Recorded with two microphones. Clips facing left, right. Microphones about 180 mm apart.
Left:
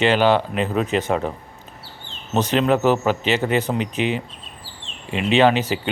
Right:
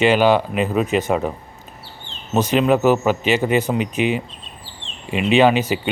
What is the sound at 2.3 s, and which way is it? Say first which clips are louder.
Speech: right 2 dB; 10° right (ahead or behind).